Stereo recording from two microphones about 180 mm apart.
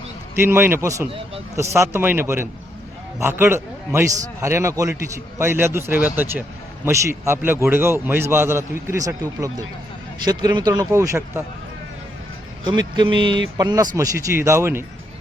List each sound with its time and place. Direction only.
0.3 s a man's voice: 10° right (ahead or behind)
12.6 s a man's voice: 25° right (ahead or behind)